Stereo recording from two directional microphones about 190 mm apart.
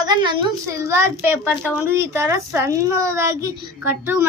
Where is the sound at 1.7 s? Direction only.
15° right (ahead or behind).